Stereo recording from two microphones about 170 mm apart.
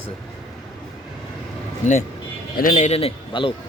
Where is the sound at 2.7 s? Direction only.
35° left (ahead or behind).